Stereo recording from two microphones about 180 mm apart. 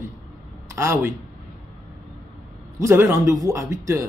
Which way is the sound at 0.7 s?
15° right (ahead or behind).